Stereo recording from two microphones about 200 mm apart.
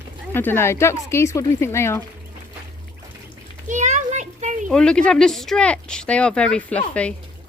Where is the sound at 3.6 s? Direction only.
35° right (ahead or behind).